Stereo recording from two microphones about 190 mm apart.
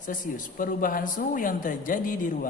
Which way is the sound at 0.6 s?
45° left (ahead or behind).